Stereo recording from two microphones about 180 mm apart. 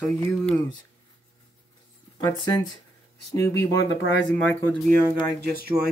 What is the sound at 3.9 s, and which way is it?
Speech, 90° left.